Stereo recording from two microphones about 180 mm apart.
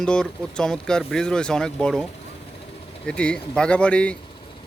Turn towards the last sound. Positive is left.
turn(degrees=5)  # may be behind; listen again after turning